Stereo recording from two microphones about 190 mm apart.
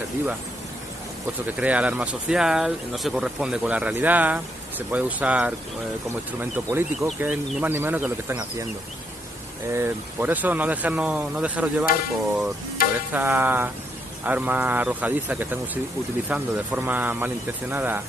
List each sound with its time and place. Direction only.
1.6 s speech: 5° right (ahead or behind)
9.7 s speech: 10° right (ahead or behind)
12.8 s stir: 50° left (ahead or behind)
13.1 s speech: 10° right (ahead or behind)